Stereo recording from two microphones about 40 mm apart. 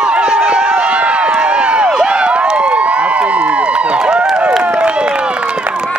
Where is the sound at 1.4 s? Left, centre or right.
Right.